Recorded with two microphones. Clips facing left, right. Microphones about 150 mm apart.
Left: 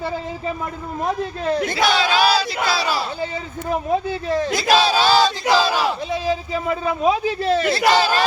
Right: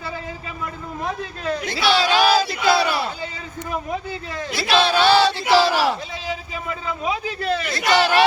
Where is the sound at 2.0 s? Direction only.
40° right (ahead or behind).